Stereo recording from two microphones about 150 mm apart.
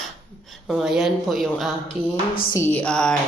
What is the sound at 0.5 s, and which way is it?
Speech, centre (ahead or behind).